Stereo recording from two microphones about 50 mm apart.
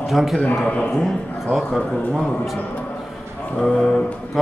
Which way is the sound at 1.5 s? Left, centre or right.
Centre.